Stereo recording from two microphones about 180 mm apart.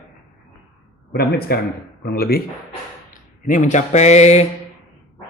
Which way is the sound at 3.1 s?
45° left (ahead or behind).